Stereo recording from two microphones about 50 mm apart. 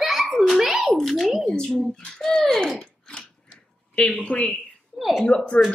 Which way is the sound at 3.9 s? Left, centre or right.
Left.